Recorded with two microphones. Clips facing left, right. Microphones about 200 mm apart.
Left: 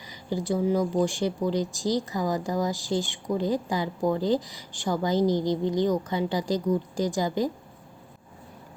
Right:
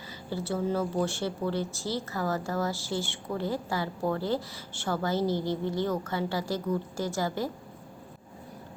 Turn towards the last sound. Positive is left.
turn(degrees=15)  # may be behind; listen again after turning